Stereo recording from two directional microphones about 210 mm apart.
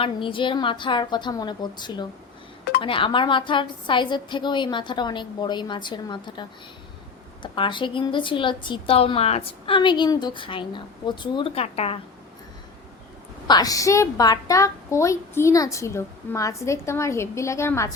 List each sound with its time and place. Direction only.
0.0 s a woman's voice: 25° left (ahead or behind)
7.4 s a woman's voice: 25° left (ahead or behind)
13.5 s a woman's voice: 15° left (ahead or behind)